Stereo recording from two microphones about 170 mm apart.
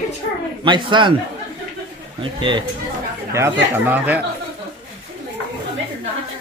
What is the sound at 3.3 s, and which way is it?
Speech, 15° right (ahead or behind).